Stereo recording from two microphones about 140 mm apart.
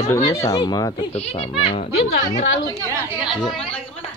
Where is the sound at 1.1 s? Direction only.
45° left (ahead or behind).